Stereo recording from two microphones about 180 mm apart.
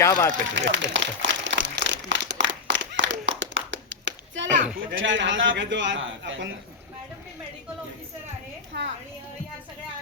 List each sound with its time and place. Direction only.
0.0 s speech: 15° left (ahead or behind)
0.5 s crumpling: 90° right
4.9 s a man's voice: 90° right
8.7 s a woman's voice: 75° right (ahead or behind)